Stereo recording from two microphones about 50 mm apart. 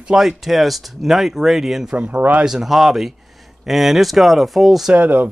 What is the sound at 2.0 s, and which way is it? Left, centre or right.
Speech, right.